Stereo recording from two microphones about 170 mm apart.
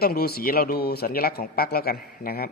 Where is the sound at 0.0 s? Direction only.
65° left (ahead or behind).